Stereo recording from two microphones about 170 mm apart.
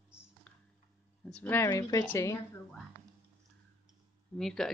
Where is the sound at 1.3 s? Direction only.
10° left (ahead or behind).